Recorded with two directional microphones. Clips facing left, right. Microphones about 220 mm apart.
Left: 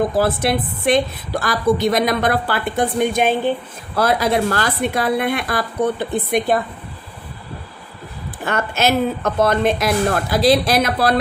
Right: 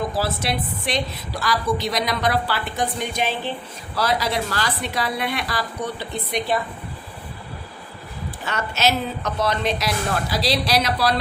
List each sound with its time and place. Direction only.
0.1 s a woman's voice: 55° left (ahead or behind)
8.4 s a woman's voice: 50° left (ahead or behind)